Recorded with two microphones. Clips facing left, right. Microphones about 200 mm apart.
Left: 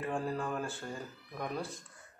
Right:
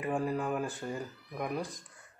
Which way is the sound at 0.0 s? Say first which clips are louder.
Right 3 dB; 10° right (ahead or behind).